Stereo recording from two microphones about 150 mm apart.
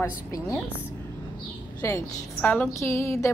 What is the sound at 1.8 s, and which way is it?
Speech, 15° left (ahead or behind).